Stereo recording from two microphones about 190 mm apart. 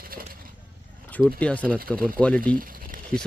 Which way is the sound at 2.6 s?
50° right (ahead or behind).